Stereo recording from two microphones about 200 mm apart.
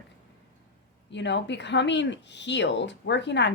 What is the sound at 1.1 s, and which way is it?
Speech, 60° left (ahead or behind).